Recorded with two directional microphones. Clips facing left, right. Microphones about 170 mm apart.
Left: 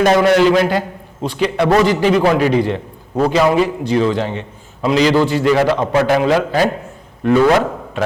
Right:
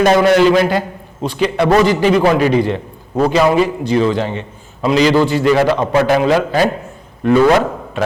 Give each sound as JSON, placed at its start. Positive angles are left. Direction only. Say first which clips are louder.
{"t": 0.0, "sound": "a man's voice", "louder": "right 1 dB", "side_deg": -15}